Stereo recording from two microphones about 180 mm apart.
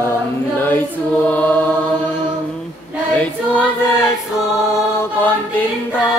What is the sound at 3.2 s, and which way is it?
Choir, 10° left (ahead or behind).